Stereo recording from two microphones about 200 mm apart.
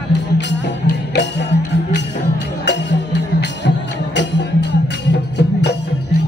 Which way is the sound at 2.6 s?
60° left (ahead or behind).